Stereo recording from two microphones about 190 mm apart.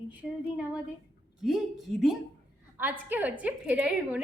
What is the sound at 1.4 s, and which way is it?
A woman's voice, centre (ahead or behind).